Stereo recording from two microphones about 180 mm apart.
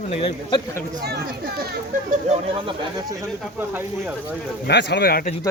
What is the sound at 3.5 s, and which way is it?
Speech, 10° right (ahead or behind).